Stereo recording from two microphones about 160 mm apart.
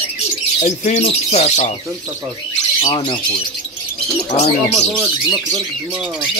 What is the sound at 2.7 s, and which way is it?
Speech, 35° left (ahead or behind).